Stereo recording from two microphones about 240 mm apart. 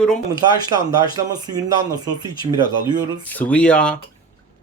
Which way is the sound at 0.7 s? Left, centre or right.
Centre.